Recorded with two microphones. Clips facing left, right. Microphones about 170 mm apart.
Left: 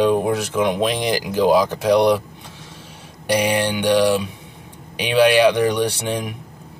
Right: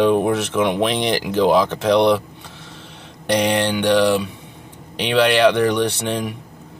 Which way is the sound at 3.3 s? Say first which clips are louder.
Right 1 dB; 10° left (ahead or behind).